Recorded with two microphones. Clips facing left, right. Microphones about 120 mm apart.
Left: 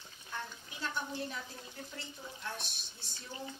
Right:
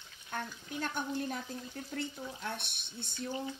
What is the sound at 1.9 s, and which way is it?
Speech, 60° right (ahead or behind).